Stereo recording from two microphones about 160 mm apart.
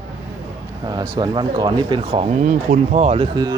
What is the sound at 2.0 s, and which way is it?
Speech, 40° right (ahead or behind).